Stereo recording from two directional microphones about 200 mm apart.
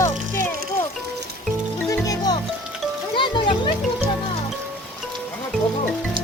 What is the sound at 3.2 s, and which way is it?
Music, 25° left (ahead or behind).